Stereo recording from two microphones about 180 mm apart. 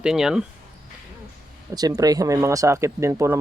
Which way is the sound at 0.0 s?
5° right (ahead or behind).